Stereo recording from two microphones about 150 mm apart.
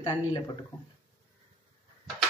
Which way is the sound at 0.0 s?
30° left (ahead or behind).